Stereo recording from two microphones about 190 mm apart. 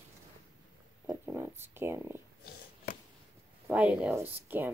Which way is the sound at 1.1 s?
10° right (ahead or behind).